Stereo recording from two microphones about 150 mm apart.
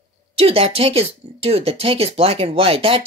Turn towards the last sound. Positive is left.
turn(degrees=-40)  # may be behind; listen again after turning